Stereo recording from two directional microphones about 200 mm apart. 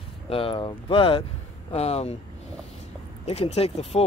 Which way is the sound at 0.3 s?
25° left (ahead or behind).